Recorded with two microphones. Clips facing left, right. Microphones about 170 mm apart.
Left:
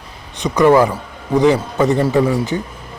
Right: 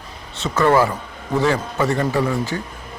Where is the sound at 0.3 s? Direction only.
15° left (ahead or behind).